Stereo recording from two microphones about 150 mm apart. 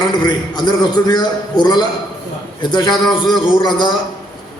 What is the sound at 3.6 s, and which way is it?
Speech, 30° left (ahead or behind).